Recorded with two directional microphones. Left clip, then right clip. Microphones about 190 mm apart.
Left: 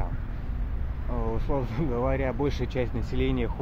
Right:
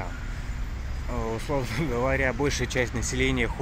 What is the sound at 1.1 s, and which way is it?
Speech, 10° right (ahead or behind).